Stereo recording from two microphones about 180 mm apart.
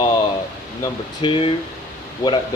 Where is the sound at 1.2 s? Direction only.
25° left (ahead or behind).